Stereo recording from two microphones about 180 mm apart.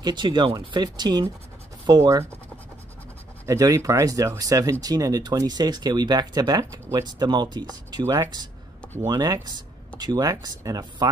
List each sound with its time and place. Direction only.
0.0 s speech: 25° right (ahead or behind)
3.4 s speech: 20° right (ahead or behind)